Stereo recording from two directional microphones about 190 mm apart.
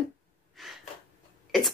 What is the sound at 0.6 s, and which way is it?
Gasp, centre (ahead or behind).